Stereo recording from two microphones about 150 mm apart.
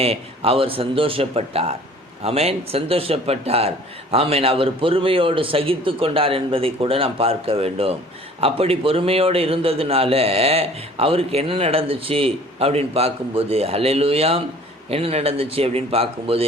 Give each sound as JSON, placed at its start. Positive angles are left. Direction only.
{"t": 0.0, "sound": "a man's voice", "side_deg": -40}